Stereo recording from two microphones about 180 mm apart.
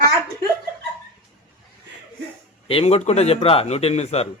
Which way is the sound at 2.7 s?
30° left (ahead or behind).